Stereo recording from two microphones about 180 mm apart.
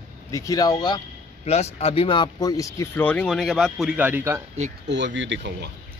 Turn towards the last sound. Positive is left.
turn(degrees=-70)  # may be behind; listen again after turning